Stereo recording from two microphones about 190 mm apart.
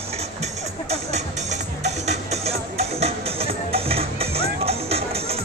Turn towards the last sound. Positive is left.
turn(degrees=-30)  # may be behind; listen again after turning